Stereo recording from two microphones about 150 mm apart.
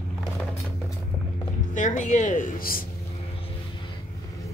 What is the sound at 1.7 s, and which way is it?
A woman's voice, 55° left (ahead or behind).